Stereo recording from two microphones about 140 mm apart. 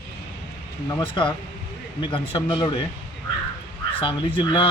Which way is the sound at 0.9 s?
30° left (ahead or behind).